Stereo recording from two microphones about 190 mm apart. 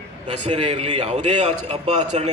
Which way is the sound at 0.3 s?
40° right (ahead or behind).